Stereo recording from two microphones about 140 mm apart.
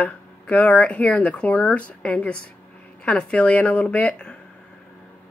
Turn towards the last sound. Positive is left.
turn(degrees=10)  # may be behind; listen again after turning